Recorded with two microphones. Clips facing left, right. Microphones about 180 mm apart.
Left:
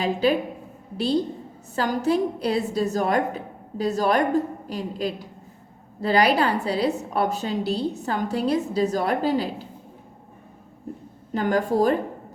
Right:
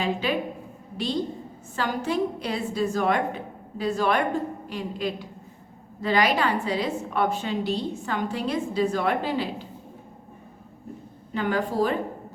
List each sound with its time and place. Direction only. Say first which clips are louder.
0.0 s a woman's voice: left 4 dB; 40° left (ahead or behind)
11.3 s a woman's voice: left 3 dB; 40° left (ahead or behind)